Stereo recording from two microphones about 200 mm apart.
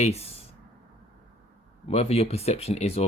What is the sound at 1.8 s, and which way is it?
Speech, 30° left (ahead or behind).